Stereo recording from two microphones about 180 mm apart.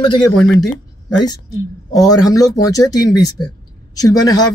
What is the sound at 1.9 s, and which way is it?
Speech, 20° left (ahead or behind).